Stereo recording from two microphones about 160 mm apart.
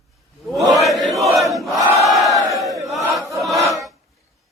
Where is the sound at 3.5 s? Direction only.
20° right (ahead or behind).